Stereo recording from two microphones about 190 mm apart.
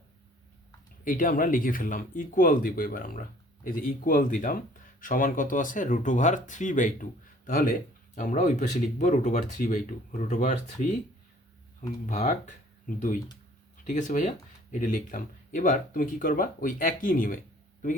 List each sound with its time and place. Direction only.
1.0 s speech: 45° left (ahead or behind)
13.8 s speech: 40° left (ahead or behind)